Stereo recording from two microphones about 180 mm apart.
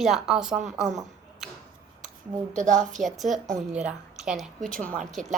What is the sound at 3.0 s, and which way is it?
A woman's voice, centre (ahead or behind).